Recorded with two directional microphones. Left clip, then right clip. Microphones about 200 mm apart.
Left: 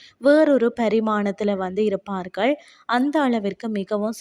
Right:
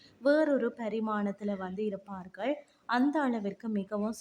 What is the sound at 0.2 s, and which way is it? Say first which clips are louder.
Speech: left 11 dB; 35° left (ahead or behind).